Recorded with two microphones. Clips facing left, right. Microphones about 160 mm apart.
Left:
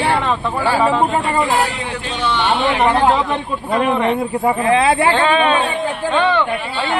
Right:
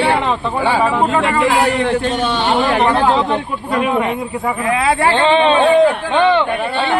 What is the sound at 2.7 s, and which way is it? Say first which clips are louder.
Speech: right 1 dB; 10° left (ahead or behind).